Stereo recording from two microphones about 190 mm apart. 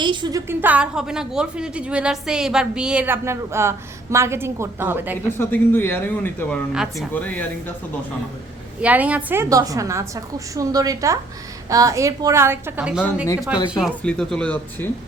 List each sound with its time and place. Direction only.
0.0 s a woman's voice: 25° right (ahead or behind)
5.4 s speech: 10° left (ahead or behind)
8.8 s a woman's voice: 5° right (ahead or behind); by 14.8 s 10° left (ahead or behind)